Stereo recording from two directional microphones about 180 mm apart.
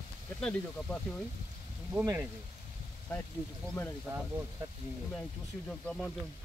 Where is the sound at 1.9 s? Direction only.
15° right (ahead or behind).